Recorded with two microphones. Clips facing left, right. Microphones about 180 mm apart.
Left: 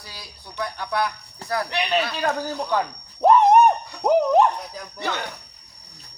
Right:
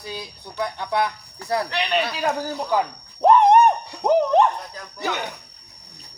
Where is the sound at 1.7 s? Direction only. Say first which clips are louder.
Even; 10° left (ahead or behind).